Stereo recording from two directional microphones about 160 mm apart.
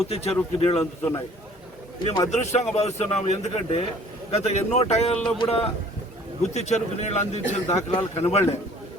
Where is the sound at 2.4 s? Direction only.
45° left (ahead or behind).